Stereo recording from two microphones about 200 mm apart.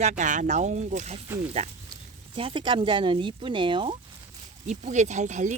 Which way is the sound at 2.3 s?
25° right (ahead or behind).